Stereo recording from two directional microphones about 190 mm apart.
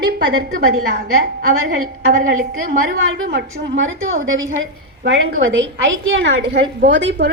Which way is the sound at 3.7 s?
90° right.